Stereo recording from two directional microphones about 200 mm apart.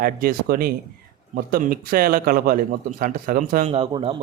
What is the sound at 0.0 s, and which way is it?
A man's voice, 45° right (ahead or behind).